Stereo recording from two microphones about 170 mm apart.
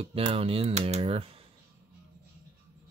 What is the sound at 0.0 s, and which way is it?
Speech, 35° right (ahead or behind).